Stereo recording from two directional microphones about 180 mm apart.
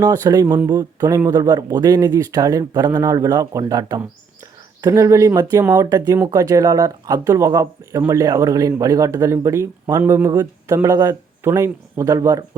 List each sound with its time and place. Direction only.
0.0 s speech: 20° right (ahead or behind)